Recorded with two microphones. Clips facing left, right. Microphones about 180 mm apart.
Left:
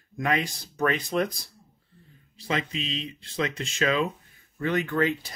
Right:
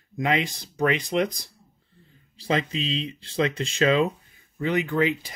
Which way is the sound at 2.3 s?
35° right (ahead or behind).